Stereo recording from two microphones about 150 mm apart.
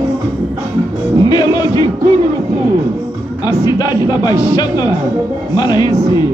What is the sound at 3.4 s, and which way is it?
Speech, 25° left (ahead or behind).